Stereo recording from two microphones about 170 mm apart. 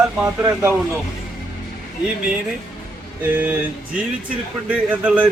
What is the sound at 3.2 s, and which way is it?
Speech, 10° right (ahead or behind).